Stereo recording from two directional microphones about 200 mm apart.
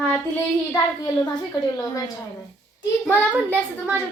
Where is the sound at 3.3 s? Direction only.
10° right (ahead or behind).